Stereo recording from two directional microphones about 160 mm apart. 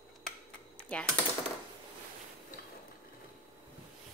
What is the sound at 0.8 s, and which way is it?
Typing, 10° left (ahead or behind).